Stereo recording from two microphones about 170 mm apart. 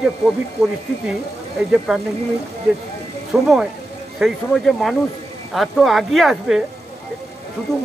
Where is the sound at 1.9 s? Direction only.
Centre (ahead or behind).